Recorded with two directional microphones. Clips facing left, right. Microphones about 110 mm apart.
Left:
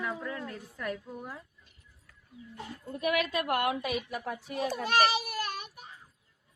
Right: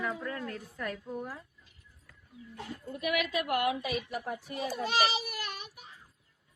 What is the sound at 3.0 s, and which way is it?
A woman's voice, 40° left (ahead or behind).